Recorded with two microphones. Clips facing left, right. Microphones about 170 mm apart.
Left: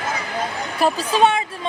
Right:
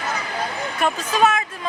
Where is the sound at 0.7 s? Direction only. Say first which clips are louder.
Left 3 dB; 30° left (ahead or behind).